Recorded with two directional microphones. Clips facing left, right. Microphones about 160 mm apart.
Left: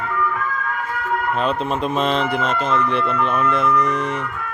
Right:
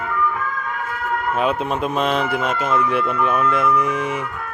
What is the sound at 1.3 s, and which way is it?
Speech, 5° right (ahead or behind).